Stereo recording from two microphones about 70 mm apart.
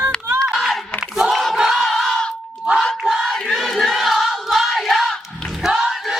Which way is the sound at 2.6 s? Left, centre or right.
Centre.